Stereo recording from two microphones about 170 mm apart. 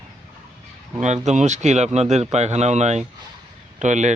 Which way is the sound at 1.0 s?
45° right (ahead or behind).